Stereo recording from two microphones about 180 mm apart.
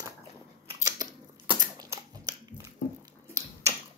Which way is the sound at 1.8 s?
20° right (ahead or behind).